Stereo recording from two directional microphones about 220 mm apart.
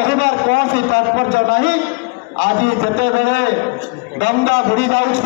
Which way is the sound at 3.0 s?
50° left (ahead or behind).